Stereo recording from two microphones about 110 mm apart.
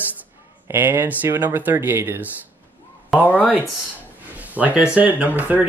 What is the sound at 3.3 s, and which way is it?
Speech, 15° left (ahead or behind).